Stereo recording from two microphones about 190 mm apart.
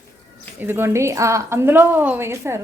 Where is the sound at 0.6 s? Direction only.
10° right (ahead or behind).